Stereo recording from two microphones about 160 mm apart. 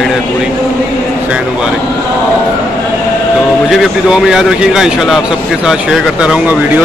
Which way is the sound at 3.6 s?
Centre (ahead or behind).